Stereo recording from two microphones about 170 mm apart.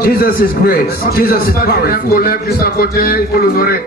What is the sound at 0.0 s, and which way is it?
A man's voice, 60° left (ahead or behind).